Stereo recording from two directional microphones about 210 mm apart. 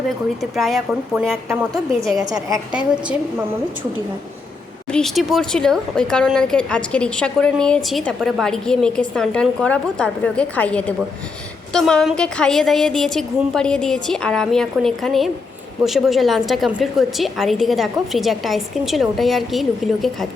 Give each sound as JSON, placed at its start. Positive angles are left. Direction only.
{"t": 0.5, "sound": "speech", "side_deg": 0}
{"t": 2.0, "sound": "a woman's voice", "side_deg": -15}
{"t": 2.9, "sound": "speech", "side_deg": -5}
{"t": 4.9, "sound": "speech", "side_deg": 0}